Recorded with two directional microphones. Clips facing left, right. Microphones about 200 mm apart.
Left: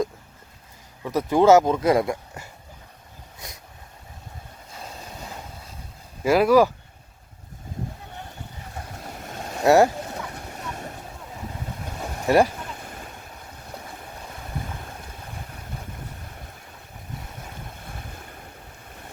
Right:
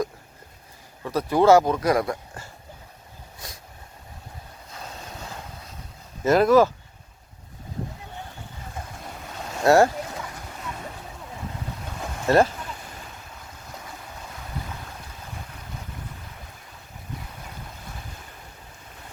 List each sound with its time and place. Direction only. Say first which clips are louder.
1.0 s speech: left 1 dB; 20° left (ahead or behind)
3.3 s boat: even; 20° left (ahead or behind)
4.7 s vehicle: even; 5° left (ahead or behind)
6.2 s speech: even; 10° left (ahead or behind)
9.6 s speech: left 1 dB; 15° left (ahead or behind)
12.2 s speech: even; 15° left (ahead or behind)